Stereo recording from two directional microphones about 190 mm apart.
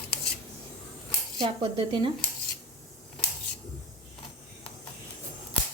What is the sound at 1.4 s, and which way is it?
Speech, 25° right (ahead or behind).